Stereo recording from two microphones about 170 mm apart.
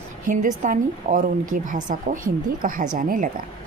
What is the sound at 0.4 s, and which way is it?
A woman's voice, 50° right (ahead or behind).